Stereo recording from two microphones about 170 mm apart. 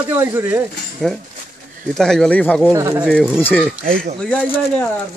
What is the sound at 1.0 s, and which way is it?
Speech, 5° left (ahead or behind).